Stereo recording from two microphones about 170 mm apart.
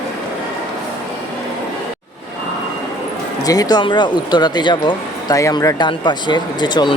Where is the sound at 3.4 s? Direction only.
20° left (ahead or behind).